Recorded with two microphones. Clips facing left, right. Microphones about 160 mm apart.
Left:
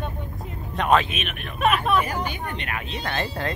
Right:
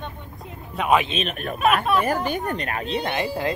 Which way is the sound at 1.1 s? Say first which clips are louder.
Right 6 dB; 35° right (ahead or behind).